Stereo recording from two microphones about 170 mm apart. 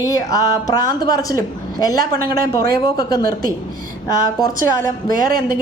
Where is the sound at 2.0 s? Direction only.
60° right (ahead or behind).